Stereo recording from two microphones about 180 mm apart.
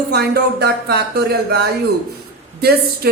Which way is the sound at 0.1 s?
65° right (ahead or behind).